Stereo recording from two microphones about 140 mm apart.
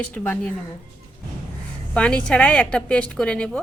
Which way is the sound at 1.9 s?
10° left (ahead or behind).